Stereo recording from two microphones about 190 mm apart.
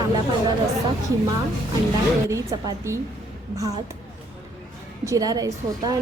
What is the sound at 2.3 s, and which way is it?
Speech, 15° right (ahead or behind).